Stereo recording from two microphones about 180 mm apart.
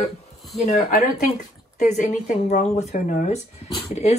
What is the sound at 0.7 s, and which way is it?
Speech, 45° left (ahead or behind).